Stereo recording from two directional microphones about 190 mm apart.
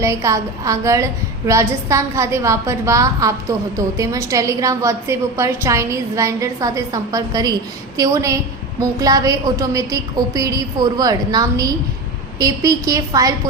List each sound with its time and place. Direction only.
0.0 s a woman's voice: 15° right (ahead or behind)